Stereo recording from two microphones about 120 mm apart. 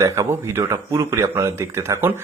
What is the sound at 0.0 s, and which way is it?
A man's voice, 20° right (ahead or behind).